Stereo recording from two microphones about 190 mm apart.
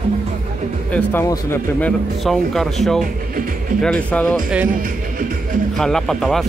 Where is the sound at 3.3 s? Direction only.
45° right (ahead or behind).